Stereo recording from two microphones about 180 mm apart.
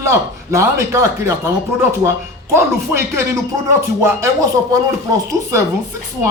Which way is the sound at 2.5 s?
15° right (ahead or behind).